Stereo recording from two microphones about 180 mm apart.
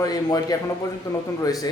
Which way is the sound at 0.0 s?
20° left (ahead or behind).